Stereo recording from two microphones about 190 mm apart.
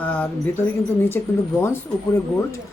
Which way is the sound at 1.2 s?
10° left (ahead or behind).